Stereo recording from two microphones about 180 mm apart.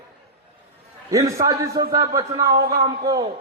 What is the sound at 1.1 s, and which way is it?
A man's voice, 20° right (ahead or behind).